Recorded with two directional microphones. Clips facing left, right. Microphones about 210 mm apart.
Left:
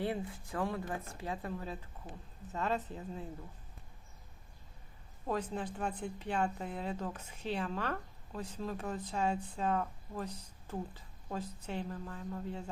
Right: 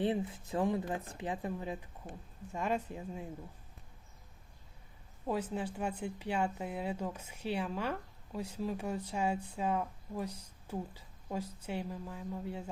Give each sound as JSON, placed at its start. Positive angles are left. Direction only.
{"t": 0.0, "sound": "a woman's voice", "side_deg": -20}
{"t": 5.2, "sound": "a woman's voice", "side_deg": -10}